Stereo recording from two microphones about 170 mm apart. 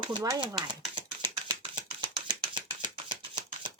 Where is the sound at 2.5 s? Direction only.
25° right (ahead or behind).